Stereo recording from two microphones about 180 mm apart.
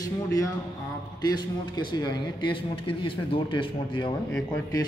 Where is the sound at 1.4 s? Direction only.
25° left (ahead or behind).